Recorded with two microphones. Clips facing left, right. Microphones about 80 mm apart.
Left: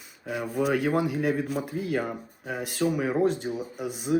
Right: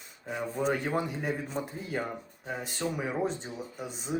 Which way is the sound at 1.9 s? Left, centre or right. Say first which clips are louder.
Left 3 dB; centre.